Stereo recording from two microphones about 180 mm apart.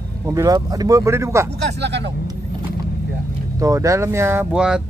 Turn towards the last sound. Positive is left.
turn(degrees=-5)  # may be behind; listen again after turning